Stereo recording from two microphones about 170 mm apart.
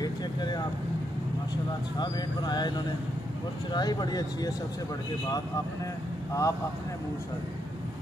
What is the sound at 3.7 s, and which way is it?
Speech, 25° left (ahead or behind).